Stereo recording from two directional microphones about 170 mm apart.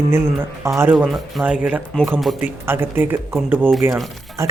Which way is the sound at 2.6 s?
15° right (ahead or behind).